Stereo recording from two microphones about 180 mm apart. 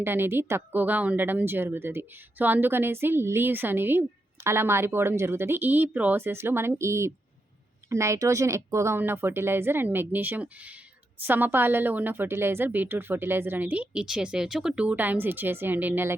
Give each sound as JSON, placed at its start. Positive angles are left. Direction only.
{"t": 0.0, "sound": "a woman's voice", "side_deg": -10}